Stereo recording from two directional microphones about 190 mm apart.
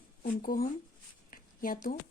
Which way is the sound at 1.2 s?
45° left (ahead or behind).